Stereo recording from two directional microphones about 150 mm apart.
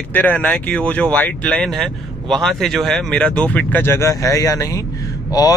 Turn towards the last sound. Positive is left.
turn(degrees=25)  # may be behind; listen again after turning